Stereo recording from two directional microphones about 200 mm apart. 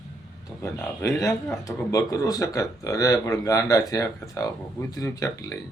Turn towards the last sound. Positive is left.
turn(degrees=15)  # may be behind; listen again after turning